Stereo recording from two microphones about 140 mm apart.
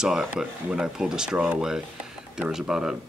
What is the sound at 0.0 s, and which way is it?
Speech, 5° right (ahead or behind).